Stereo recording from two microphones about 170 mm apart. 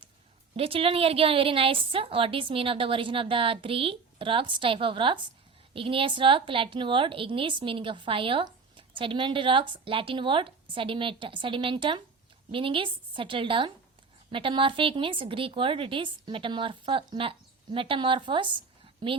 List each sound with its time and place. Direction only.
0.5 s a woman's voice: 35° right (ahead or behind)